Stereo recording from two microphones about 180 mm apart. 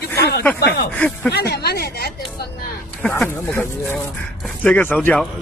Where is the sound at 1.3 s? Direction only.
65° left (ahead or behind).